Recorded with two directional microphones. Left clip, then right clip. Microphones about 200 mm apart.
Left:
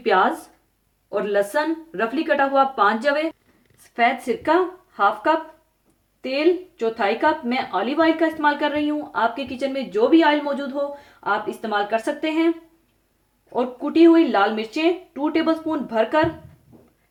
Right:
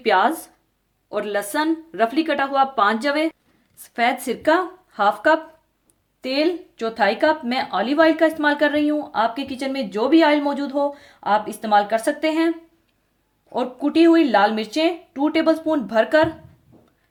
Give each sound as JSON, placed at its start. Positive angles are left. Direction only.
{"t": 0.0, "sound": "a woman's voice", "side_deg": -50}
{"t": 13.5, "sound": "a woman's voice", "side_deg": -50}